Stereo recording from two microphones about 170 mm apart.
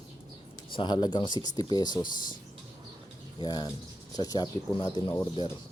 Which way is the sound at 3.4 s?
25° left (ahead or behind).